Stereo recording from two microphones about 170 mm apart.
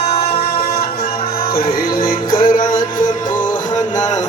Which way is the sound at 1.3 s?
60° left (ahead or behind).